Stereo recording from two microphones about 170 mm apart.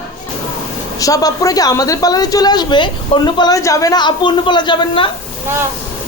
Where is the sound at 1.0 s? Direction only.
20° left (ahead or behind).